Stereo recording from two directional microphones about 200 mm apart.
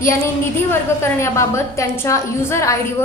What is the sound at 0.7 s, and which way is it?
A woman's voice, 15° left (ahead or behind).